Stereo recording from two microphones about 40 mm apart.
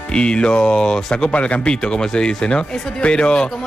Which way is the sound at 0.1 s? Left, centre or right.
Left.